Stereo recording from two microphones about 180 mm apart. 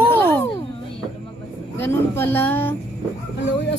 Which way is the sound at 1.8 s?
10° left (ahead or behind).